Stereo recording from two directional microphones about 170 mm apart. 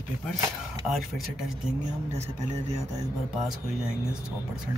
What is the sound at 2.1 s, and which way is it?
Speech, 40° right (ahead or behind).